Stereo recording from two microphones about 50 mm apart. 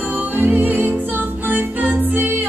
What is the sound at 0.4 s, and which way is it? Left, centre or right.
Music, right.